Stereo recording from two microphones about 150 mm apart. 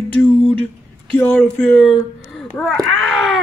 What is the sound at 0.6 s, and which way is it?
Speech, 5° left (ahead or behind).